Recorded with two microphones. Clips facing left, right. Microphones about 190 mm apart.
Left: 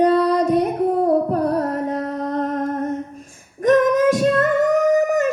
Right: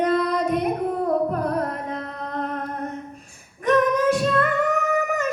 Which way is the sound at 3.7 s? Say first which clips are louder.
Left 4 dB; 45° left (ahead or behind).